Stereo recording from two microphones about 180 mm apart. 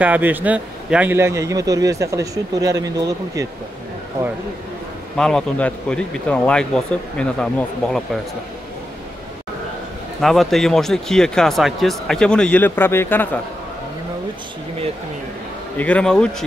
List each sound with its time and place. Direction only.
0.0 s a man's voice: 10° right (ahead or behind)
5.1 s speech: 5° left (ahead or behind)
10.2 s speech: centre (ahead or behind)
15.8 s speech: 5° left (ahead or behind)